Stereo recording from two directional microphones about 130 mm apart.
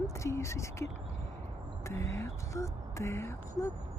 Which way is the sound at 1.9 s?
20° left (ahead or behind).